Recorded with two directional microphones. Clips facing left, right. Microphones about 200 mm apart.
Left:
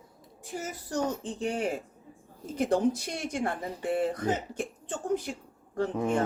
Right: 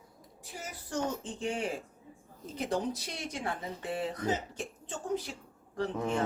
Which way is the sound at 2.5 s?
50° left (ahead or behind).